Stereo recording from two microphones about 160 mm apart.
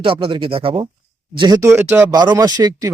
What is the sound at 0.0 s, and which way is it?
Speech, 30° right (ahead or behind).